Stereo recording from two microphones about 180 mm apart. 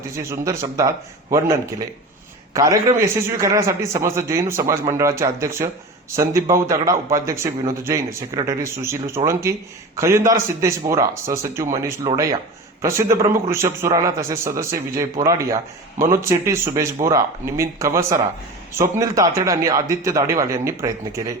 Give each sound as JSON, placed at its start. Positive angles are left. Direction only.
{"t": 0.1, "sound": "a man's voice", "side_deg": -15}